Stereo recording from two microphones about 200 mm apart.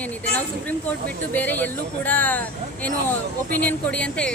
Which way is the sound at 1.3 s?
10° left (ahead or behind).